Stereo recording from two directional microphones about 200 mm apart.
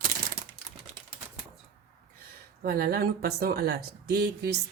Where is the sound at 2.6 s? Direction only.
45° right (ahead or behind).